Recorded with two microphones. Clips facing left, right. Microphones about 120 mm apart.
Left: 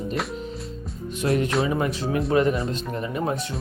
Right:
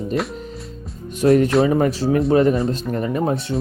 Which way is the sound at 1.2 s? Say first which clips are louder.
Right 8 dB; 30° right (ahead or behind).